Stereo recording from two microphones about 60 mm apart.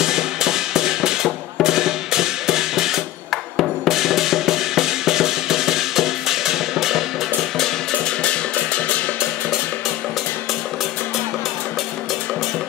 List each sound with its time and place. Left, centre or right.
0.0 s drum: centre
3.5 s music: centre
8.7 s music: left